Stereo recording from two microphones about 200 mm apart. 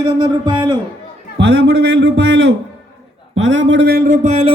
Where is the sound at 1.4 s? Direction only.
55° right (ahead or behind); by 4.5 s 30° right (ahead or behind).